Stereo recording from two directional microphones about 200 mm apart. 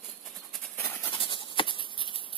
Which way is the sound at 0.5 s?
5° left (ahead or behind).